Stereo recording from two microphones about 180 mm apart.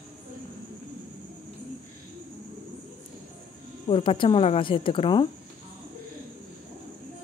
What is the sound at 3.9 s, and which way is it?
Speech, 30° left (ahead or behind).